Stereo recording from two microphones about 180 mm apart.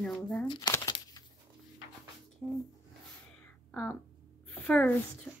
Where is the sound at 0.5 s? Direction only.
20° left (ahead or behind).